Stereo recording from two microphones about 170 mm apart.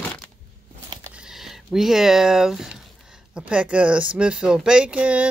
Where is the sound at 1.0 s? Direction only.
5° right (ahead or behind).